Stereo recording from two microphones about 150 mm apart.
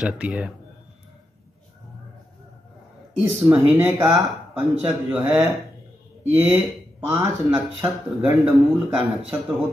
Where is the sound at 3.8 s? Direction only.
15° right (ahead or behind).